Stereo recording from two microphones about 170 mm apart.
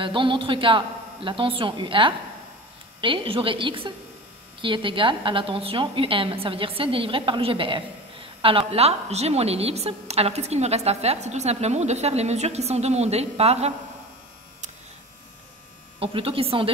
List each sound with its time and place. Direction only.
0.0 s a man's voice: 30° right (ahead or behind)
16.0 s a woman's voice: 35° right (ahead or behind)